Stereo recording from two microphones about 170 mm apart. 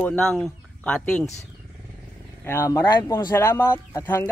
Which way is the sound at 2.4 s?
15° left (ahead or behind).